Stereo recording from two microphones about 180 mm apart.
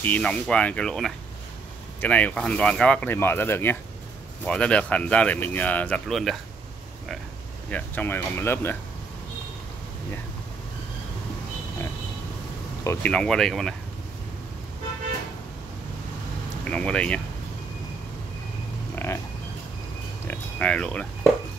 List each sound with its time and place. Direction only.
0.0 s speech: 5° left (ahead or behind)
7.7 s speech: 10° left (ahead or behind)
12.8 s speech: 15° left (ahead or behind)
13.1 s speech: 5° left (ahead or behind)
16.6 s speech: 5° left (ahead or behind)
19.0 s a sound: 10° left (ahead or behind)
20.2 s speech: 5° left (ahead or behind)